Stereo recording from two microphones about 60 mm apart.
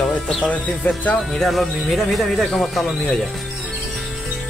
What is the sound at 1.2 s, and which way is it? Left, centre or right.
Speech, centre.